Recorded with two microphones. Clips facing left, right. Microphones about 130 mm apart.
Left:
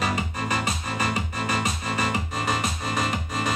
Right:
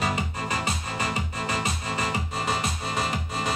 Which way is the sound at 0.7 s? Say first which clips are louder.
Left 2 dB; 30° right (ahead or behind).